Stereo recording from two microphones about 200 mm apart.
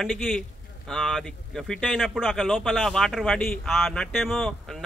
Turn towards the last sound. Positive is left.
turn(degrees=0)  # may be behind; listen again after turning